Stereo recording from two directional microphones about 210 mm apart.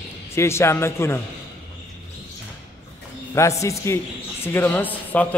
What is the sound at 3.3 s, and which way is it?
Speech, 15° left (ahead or behind).